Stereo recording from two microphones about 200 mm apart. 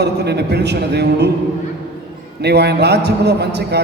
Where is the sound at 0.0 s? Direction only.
55° right (ahead or behind).